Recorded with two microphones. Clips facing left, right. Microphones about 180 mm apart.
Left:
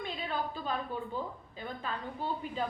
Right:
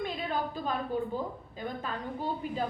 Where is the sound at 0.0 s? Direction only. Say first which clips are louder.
Right 3 dB; 45° right (ahead or behind).